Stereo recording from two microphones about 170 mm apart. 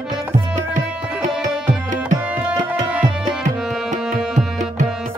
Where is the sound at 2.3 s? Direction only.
10° right (ahead or behind).